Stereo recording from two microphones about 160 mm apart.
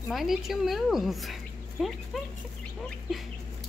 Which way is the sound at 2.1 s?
Centre (ahead or behind).